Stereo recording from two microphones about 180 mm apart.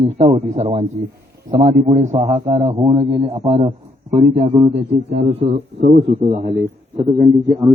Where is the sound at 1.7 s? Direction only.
45° right (ahead or behind).